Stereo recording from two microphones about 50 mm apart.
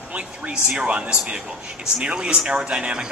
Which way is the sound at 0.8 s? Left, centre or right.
Right.